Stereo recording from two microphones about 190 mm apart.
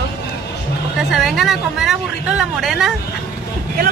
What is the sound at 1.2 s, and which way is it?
Speech, centre (ahead or behind).